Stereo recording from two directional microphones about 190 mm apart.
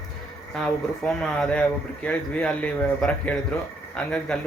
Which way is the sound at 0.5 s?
5° left (ahead or behind).